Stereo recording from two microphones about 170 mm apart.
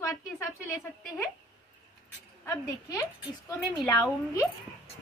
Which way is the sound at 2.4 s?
20° left (ahead or behind).